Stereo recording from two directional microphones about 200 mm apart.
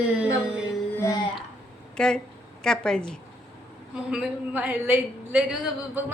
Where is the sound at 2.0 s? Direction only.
5° left (ahead or behind).